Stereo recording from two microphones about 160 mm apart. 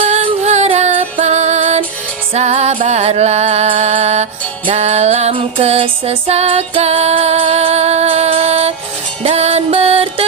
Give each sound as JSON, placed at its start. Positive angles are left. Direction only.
{"t": 0.1, "sound": "music", "side_deg": -45}